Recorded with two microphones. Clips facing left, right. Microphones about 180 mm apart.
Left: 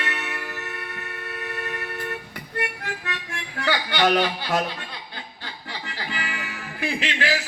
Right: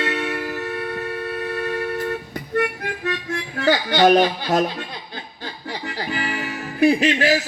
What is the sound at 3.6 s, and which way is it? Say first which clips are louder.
Speech: right 6 dB; 40° right (ahead or behind).